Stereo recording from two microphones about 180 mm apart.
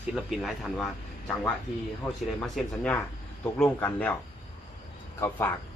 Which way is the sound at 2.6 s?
Centre (ahead or behind).